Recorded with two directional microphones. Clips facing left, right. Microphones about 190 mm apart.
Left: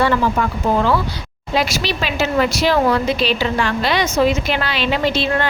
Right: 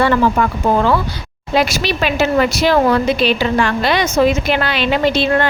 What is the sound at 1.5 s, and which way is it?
A woman's voice, 55° right (ahead or behind).